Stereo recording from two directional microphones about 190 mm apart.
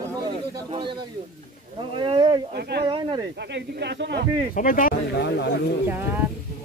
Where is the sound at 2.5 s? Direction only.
60° right (ahead or behind).